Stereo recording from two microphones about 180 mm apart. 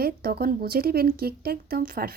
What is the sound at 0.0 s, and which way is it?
Speech, 55° right (ahead or behind).